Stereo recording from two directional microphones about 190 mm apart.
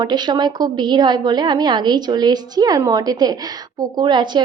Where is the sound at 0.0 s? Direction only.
20° right (ahead or behind).